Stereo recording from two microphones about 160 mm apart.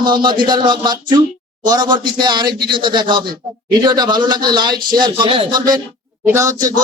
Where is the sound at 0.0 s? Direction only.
30° right (ahead or behind).